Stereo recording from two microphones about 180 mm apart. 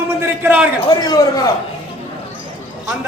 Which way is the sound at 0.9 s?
20° left (ahead or behind).